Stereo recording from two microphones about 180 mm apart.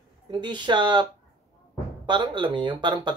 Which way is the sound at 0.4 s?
25° right (ahead or behind).